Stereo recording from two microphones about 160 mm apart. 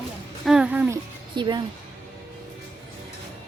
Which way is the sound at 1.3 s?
30° right (ahead or behind).